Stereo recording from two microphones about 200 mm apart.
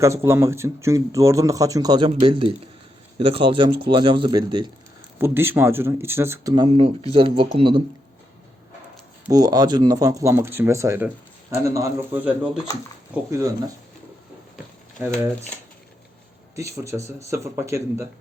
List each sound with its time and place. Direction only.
0.0 s a man's voice: 15° right (ahead or behind)
5.2 s a man's voice: 10° right (ahead or behind)
6.7 s speech: 30° right (ahead or behind)
9.3 s a man's voice: 20° right (ahead or behind)
16.6 s a man's voice: 15° right (ahead or behind)